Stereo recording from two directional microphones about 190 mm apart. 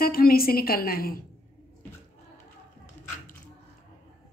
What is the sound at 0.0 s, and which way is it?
A woman's voice, 50° left (ahead or behind).